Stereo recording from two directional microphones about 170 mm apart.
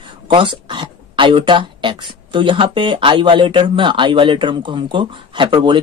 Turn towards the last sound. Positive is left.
turn(degrees=-25)  # may be behind; listen again after turning